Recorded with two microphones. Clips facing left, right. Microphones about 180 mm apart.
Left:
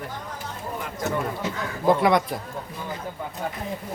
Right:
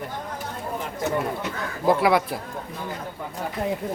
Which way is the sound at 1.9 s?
5° right (ahead or behind).